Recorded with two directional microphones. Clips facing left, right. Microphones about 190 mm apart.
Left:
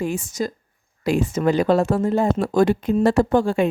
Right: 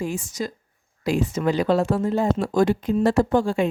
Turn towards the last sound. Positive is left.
turn(degrees=60)  # may be behind; listen again after turning